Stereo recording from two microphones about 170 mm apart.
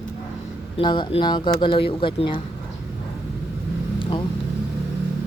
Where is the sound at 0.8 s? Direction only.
25° left (ahead or behind).